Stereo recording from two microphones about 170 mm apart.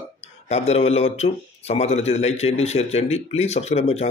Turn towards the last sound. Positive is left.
turn(degrees=40)  # may be behind; listen again after turning